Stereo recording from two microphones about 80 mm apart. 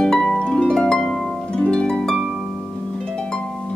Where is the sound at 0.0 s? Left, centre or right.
Centre.